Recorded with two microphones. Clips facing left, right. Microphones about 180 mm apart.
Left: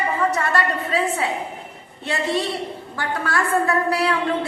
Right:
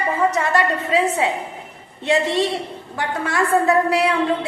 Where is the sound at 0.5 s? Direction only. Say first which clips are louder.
Right 3 dB; 20° right (ahead or behind).